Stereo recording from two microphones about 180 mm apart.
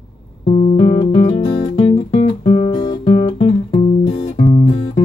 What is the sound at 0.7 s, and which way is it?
Music, 25° left (ahead or behind).